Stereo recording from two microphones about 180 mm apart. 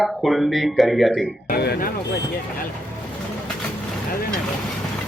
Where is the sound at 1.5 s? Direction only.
60° left (ahead or behind).